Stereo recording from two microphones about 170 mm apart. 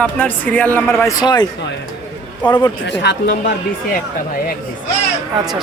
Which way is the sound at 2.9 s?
90° left.